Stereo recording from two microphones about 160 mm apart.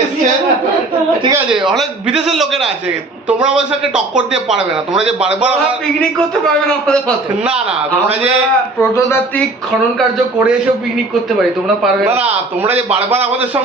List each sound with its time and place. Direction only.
1.5 s a man's voice: 5° right (ahead or behind)
8.8 s a man's voice: 15° left (ahead or behind)
12.9 s a man's voice: 10° right (ahead or behind)